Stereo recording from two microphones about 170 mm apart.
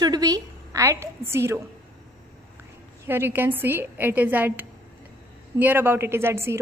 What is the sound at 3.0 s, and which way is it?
A woman's voice, 15° right (ahead or behind).